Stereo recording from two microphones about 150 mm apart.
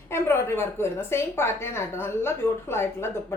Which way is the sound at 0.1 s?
15° left (ahead or behind).